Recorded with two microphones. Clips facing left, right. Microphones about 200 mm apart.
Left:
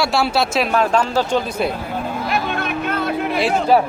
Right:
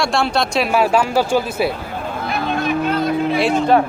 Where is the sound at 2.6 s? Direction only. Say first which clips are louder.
Right 4 dB; 60° left (ahead or behind).